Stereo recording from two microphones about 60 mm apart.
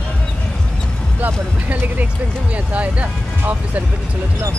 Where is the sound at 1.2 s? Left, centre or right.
Right.